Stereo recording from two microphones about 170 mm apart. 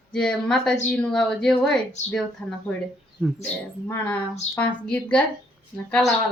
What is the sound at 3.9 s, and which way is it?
Speech, 10° left (ahead or behind).